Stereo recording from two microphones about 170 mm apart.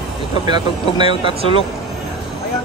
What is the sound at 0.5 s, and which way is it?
Speech, 25° right (ahead or behind).